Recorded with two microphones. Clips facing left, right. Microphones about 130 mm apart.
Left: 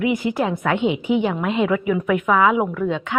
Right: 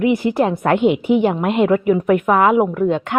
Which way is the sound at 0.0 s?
45° right (ahead or behind).